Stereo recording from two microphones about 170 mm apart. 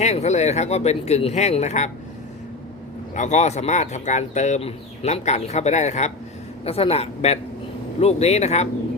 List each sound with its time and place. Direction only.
0.0 s speech: 40° left (ahead or behind)
3.2 s speech: 45° left (ahead or behind)